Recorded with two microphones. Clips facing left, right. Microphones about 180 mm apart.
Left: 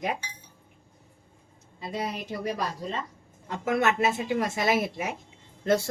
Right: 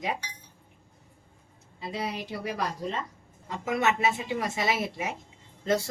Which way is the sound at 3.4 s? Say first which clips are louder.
Left 2 dB; 55° left (ahead or behind).